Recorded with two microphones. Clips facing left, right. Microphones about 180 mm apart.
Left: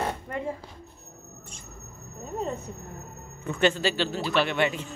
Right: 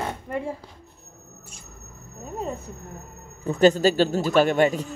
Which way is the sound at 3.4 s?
35° right (ahead or behind).